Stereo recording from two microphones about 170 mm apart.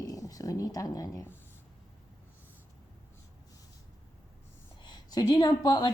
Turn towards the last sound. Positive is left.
turn(degrees=25)  # may be behind; listen again after turning